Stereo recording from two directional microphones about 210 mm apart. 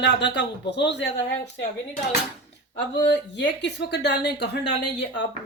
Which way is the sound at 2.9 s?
55° left (ahead or behind).